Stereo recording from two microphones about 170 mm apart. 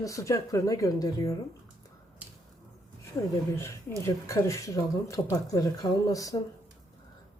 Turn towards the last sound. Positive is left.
turn(degrees=20)  # may be behind; listen again after turning